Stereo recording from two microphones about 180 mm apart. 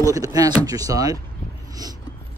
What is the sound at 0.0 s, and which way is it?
Speech, 20° right (ahead or behind).